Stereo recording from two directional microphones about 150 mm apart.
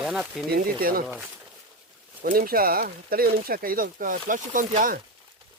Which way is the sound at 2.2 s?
70° right (ahead or behind).